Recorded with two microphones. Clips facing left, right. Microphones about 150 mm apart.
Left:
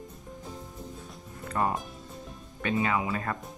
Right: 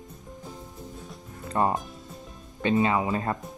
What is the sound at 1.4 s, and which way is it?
Music, 25° right (ahead or behind).